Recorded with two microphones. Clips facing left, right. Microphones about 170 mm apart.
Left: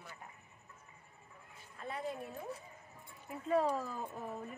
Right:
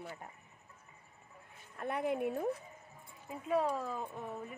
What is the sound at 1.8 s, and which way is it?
Speech, 60° right (ahead or behind).